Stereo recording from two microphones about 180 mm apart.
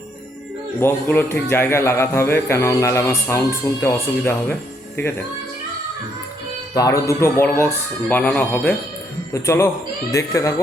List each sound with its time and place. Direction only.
0.8 s a man's voice: 15° left (ahead or behind)
6.7 s a man's voice: 20° left (ahead or behind)